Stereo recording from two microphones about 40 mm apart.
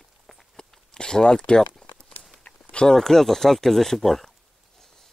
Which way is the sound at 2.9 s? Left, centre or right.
Centre.